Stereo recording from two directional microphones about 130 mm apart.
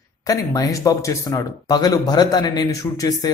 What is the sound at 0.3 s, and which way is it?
Speech, 25° left (ahead or behind).